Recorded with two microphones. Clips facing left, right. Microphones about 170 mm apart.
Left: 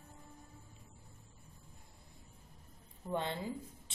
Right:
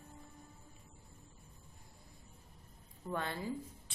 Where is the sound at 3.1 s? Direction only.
20° left (ahead or behind).